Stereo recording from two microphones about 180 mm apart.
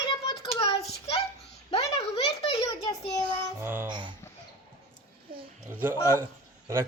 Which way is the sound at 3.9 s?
25° right (ahead or behind).